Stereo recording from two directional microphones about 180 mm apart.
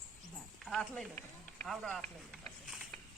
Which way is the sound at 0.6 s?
5° left (ahead or behind).